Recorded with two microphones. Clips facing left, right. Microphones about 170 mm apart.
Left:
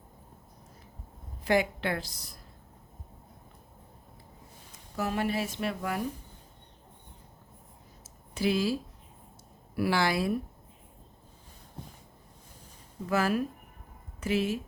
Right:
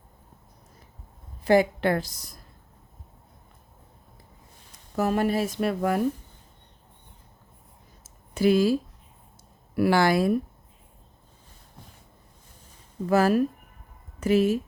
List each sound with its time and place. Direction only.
1.5 s speech: 40° right (ahead or behind)
4.9 s speech: 45° right (ahead or behind)
8.0 s a sound: 50° right (ahead or behind)
9.7 s speech: 50° right (ahead or behind)
13.1 s speech: 40° right (ahead or behind)